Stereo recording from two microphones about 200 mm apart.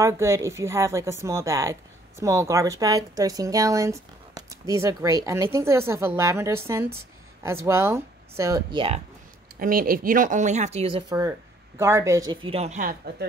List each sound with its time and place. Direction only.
0.0 s a woman's voice: 15° right (ahead or behind)
9.6 s speech: 45° right (ahead or behind)